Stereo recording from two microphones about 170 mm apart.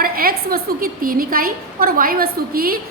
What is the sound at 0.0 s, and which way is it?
A woman's voice, 60° right (ahead or behind).